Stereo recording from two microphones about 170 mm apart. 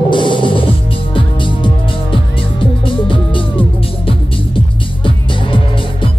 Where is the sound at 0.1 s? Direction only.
30° left (ahead or behind).